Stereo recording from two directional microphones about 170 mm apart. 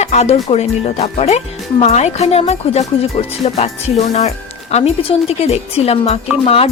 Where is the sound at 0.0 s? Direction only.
40° left (ahead or behind).